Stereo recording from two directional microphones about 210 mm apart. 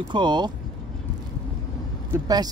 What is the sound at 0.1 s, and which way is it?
Speech, 20° right (ahead or behind).